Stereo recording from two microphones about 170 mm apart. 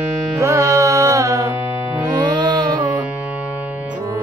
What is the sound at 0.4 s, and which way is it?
Music, 20° right (ahead or behind).